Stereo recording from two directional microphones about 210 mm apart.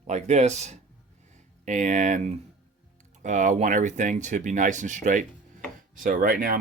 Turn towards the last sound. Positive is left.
turn(degrees=-40)  # may be behind; listen again after turning